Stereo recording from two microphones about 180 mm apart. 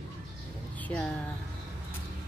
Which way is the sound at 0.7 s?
5° left (ahead or behind).